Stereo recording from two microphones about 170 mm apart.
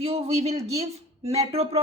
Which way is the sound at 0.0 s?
35° right (ahead or behind).